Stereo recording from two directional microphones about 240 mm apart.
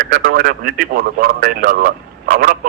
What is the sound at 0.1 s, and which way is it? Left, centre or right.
A man's voice, right.